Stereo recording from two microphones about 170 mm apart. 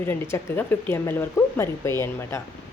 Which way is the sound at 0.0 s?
15° left (ahead or behind).